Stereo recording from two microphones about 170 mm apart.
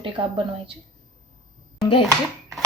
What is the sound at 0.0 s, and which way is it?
Speech, 30° right (ahead or behind).